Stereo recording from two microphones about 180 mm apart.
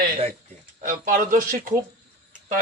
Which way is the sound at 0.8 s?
45° right (ahead or behind).